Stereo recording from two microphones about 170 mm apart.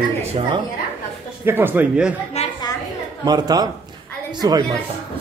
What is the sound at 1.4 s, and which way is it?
Speech, 10° right (ahead or behind).